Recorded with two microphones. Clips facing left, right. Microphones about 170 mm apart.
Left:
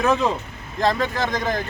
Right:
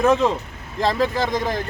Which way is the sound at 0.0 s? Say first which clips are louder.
Right 3 dB; centre (ahead or behind).